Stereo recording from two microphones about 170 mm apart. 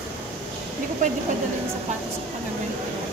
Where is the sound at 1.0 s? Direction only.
45° right (ahead or behind).